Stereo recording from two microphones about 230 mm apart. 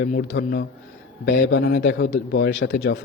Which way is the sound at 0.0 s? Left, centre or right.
Left.